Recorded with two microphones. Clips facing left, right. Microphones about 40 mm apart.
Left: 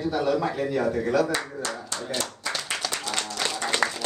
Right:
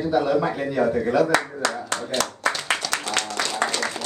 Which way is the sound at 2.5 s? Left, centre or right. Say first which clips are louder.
Right 7 dB; right.